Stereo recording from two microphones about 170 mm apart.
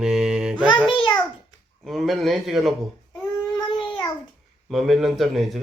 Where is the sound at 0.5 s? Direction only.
25° left (ahead or behind).